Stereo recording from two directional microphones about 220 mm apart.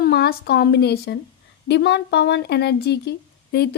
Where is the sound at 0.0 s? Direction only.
45° left (ahead or behind).